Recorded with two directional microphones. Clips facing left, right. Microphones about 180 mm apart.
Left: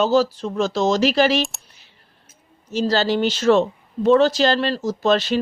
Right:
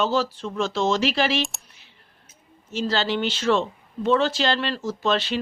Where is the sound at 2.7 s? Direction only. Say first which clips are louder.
Left 5 dB; 40° left (ahead or behind).